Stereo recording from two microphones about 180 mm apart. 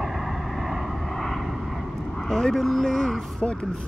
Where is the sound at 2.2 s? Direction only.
5° left (ahead or behind).